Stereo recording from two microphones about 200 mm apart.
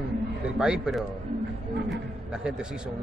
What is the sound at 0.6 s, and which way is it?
Speech, 5° right (ahead or behind).